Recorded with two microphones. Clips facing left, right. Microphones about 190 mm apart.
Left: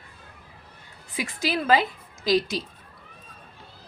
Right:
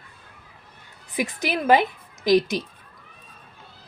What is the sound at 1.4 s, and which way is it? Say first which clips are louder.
Speech: right 3 dB; 20° right (ahead or behind).